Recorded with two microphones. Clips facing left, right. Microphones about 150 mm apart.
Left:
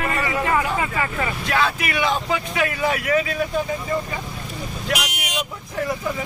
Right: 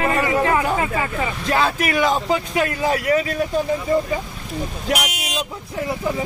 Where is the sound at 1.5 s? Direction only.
35° right (ahead or behind).